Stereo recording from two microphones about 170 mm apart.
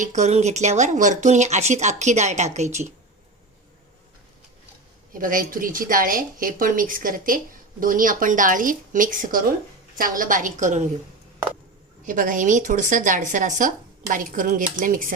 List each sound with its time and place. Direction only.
0.0 s a woman's voice: 45° right (ahead or behind)
5.1 s a woman's voice: 55° right (ahead or behind)
12.0 s a woman's voice: 50° right (ahead or behind)